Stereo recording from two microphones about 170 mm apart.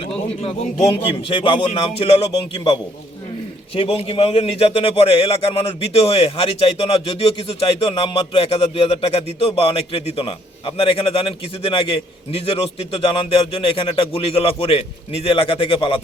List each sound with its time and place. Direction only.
0.0 s a man's voice: 35° left (ahead or behind)
3.8 s a man's voice: 35° left (ahead or behind)
13.5 s a man's voice: 35° left (ahead or behind)